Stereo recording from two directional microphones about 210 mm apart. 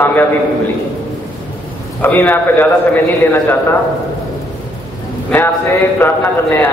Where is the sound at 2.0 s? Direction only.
10° left (ahead or behind).